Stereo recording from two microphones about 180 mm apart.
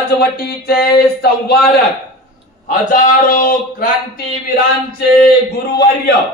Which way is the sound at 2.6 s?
55° left (ahead or behind).